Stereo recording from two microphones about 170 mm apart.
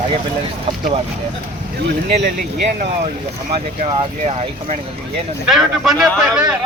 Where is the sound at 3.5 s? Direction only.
30° right (ahead or behind).